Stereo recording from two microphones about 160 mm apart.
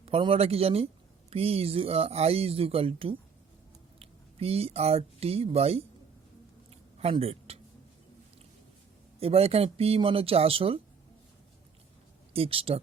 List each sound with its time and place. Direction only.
0.0 s speech: 35° right (ahead or behind)
7.0 s speech: 35° right (ahead or behind)
9.2 s speech: 40° right (ahead or behind)
12.3 s speech: 35° right (ahead or behind)